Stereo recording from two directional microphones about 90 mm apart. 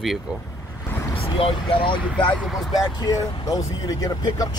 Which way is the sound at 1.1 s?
90° left.